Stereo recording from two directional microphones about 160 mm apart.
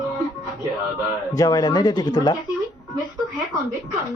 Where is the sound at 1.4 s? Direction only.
25° left (ahead or behind).